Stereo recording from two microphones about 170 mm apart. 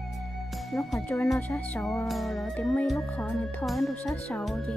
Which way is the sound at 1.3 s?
10° left (ahead or behind).